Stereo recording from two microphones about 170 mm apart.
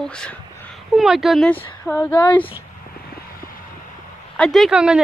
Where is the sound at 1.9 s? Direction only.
15° left (ahead or behind).